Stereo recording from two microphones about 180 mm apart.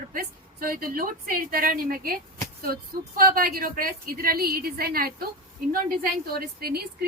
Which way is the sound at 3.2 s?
55° right (ahead or behind).